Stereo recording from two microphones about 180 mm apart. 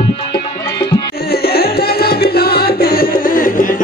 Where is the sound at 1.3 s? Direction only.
60° left (ahead or behind).